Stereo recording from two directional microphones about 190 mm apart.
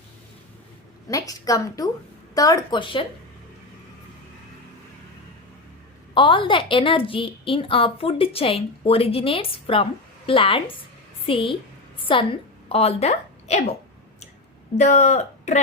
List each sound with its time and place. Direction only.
1.0 s a woman's voice: 20° left (ahead or behind)
6.1 s a woman's voice: 25° left (ahead or behind)
14.8 s speech: 35° left (ahead or behind)